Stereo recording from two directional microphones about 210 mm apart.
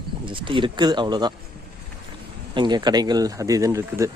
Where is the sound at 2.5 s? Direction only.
20° right (ahead or behind).